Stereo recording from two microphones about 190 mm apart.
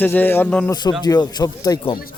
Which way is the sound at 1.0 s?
20° left (ahead or behind).